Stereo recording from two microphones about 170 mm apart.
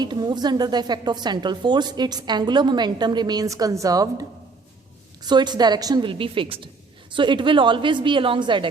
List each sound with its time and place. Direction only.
0.0 s a woman's voice: 25° right (ahead or behind)